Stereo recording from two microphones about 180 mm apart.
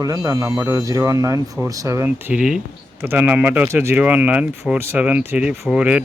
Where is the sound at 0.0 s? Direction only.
20° right (ahead or behind).